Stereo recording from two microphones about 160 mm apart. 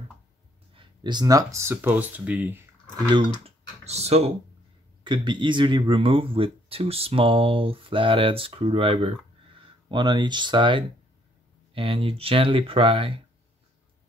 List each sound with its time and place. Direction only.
0.7 s speech: 30° right (ahead or behind); by 2.6 s 10° right (ahead or behind)
3.4 s speech: 40° right (ahead or behind)
5.0 s speech: 30° right (ahead or behind)